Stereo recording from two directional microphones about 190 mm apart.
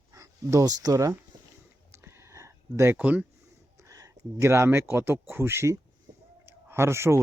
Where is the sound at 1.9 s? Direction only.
15° right (ahead or behind).